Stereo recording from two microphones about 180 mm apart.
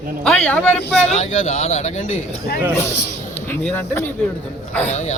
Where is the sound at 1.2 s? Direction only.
35° left (ahead or behind).